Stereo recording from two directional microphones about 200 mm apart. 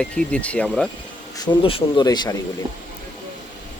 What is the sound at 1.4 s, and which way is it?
Speech, 25° left (ahead or behind).